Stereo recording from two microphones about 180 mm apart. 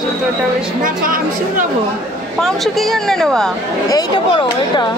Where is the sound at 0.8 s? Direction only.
50° right (ahead or behind).